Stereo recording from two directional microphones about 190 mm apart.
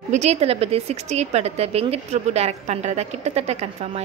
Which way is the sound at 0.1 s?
35° right (ahead or behind).